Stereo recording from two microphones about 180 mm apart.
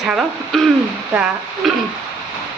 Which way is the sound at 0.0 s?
Centre (ahead or behind).